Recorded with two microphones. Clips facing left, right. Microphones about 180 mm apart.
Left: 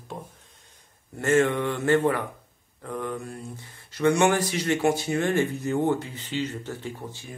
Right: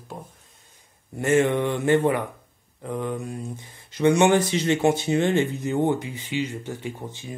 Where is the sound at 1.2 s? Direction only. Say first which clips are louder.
Right 2 dB; 15° right (ahead or behind).